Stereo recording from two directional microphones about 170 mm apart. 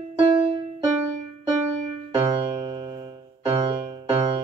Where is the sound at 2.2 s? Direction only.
30° right (ahead or behind).